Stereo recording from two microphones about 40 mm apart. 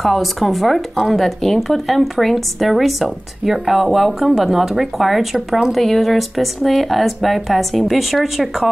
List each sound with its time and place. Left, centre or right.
0.0 s speech: centre